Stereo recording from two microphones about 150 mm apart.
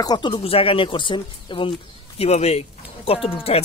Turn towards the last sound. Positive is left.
turn(degrees=40)  # may be behind; listen again after turning